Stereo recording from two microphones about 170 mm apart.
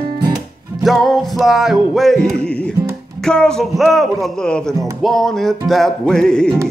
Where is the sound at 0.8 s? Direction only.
Centre (ahead or behind).